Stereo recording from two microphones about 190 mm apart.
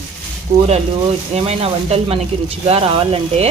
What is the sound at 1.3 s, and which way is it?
Speech, 35° right (ahead or behind).